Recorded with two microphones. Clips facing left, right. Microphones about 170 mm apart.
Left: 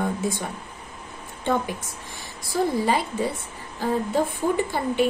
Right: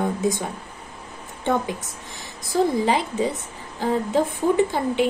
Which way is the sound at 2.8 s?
20° right (ahead or behind).